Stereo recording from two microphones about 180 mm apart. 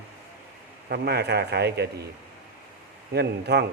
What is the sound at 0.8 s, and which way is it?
A man's voice, 65° right (ahead or behind).